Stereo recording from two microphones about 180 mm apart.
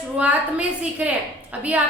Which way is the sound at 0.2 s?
5° right (ahead or behind).